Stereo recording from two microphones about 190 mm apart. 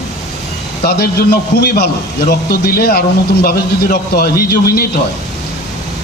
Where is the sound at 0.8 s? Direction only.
55° left (ahead or behind).